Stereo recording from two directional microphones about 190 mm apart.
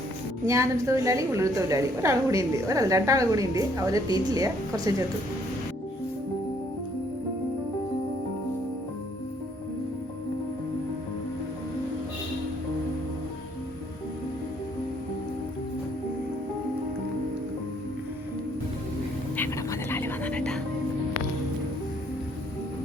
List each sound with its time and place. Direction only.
0.4 s a woman's voice: 15° right (ahead or behind)
19.4 s music: 10° left (ahead or behind)